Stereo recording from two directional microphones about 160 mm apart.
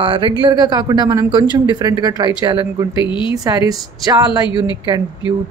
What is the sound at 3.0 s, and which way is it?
Speech, 30° left (ahead or behind).